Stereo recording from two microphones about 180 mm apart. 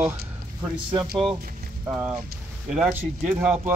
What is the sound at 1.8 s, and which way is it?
Speech, 10° right (ahead or behind).